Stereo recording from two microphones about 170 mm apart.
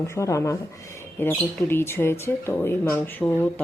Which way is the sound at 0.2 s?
20° left (ahead or behind).